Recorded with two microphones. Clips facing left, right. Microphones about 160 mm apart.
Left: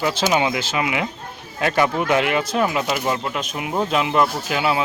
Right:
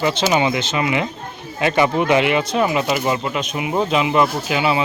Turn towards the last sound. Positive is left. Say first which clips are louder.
# right 2 dB
turn(degrees=0)  # may be behind; listen again after turning